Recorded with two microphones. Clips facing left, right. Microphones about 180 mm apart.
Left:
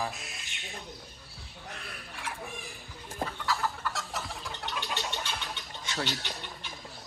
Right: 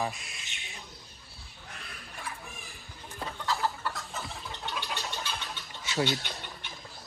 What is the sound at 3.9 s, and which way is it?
Chicken, 80° left.